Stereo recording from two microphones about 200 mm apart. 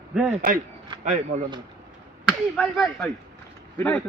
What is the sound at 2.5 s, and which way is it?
Speech, centre (ahead or behind).